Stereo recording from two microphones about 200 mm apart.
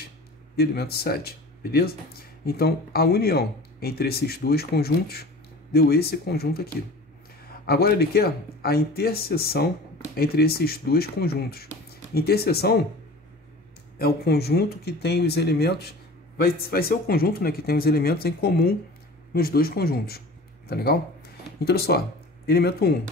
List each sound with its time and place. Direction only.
0.6 s speech: 50° left (ahead or behind)
13.9 s a man's voice: 50° left (ahead or behind)